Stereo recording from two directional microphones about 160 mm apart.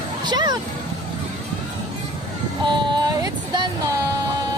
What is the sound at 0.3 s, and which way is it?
Vehicle, 25° right (ahead or behind).